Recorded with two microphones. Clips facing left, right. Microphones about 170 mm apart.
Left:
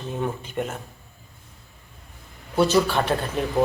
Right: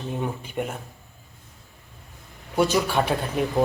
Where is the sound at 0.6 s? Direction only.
10° right (ahead or behind).